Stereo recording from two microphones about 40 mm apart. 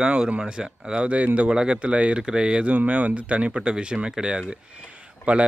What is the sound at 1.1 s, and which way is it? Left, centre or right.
Speech, right.